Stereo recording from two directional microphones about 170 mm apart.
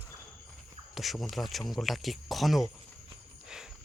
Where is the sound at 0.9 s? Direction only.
Centre (ahead or behind).